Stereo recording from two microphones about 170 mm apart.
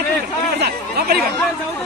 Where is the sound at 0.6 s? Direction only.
65° right (ahead or behind).